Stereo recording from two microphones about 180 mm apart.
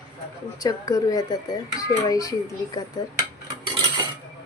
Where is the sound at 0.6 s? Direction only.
20° left (ahead or behind).